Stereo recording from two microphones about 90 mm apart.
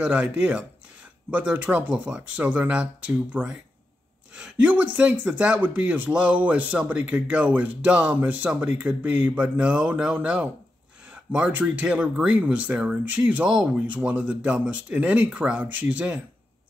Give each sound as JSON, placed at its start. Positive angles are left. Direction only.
{"t": 0.0, "sound": "speech", "side_deg": -10}